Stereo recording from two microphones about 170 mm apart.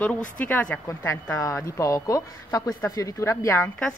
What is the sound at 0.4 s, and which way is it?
Speech, 10° left (ahead or behind).